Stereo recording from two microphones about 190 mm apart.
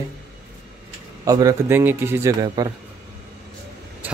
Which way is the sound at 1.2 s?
20° right (ahead or behind).